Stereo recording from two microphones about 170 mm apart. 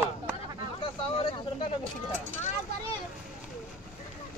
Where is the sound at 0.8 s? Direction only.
30° left (ahead or behind).